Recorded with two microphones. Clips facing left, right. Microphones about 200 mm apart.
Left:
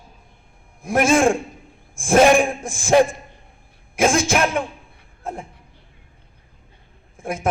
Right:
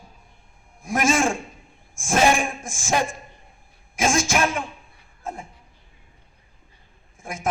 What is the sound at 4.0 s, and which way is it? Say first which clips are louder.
A man's voice: left 4 dB; 60° left (ahead or behind).